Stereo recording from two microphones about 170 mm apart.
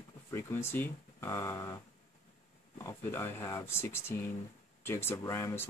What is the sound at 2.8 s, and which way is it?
Speech, 15° left (ahead or behind).